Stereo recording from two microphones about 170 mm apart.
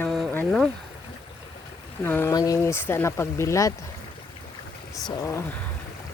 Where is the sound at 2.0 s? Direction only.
15° left (ahead or behind).